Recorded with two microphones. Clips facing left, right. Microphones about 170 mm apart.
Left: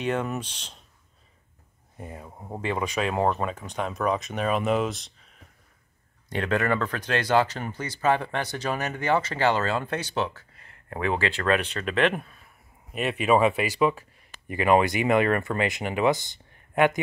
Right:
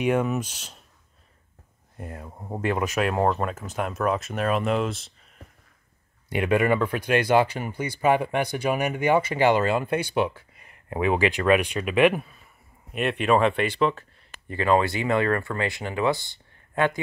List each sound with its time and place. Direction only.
0.0 s speech: 10° right (ahead or behind)
2.0 s speech: centre (ahead or behind); by 17.0 s 20° left (ahead or behind)